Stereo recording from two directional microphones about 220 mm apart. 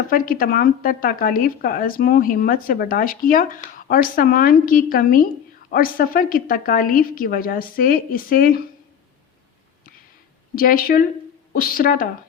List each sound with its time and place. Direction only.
0.1 s speech: 40° left (ahead or behind)
10.5 s speech: 40° left (ahead or behind)